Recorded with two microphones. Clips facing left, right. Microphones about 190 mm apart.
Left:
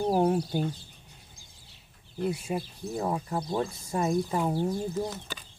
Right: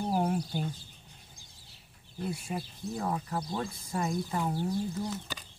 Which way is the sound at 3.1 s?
25° left (ahead or behind).